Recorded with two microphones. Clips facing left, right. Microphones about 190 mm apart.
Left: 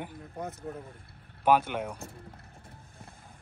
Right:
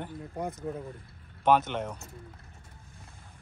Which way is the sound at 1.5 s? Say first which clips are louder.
Even; 10° left (ahead or behind).